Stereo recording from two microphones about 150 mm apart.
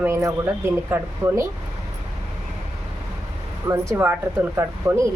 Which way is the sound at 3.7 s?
15° right (ahead or behind).